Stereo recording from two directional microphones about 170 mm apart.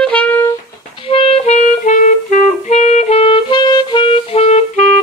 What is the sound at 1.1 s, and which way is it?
Clarinet, 35° left (ahead or behind).